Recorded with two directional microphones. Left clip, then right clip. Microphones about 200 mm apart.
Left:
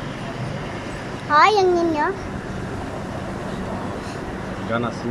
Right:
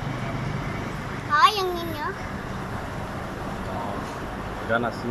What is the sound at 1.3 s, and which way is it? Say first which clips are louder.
Speech: left 5 dB; 35° left (ahead or behind).